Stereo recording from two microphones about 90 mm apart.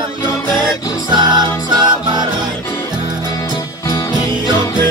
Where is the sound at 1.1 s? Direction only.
55° right (ahead or behind).